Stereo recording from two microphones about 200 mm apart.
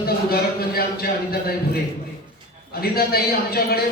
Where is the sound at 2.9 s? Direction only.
50° left (ahead or behind).